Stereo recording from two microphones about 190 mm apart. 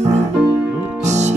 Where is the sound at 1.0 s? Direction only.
35° right (ahead or behind).